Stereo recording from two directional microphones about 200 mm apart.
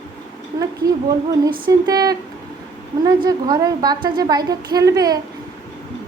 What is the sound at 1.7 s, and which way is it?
A woman's voice, 20° right (ahead or behind).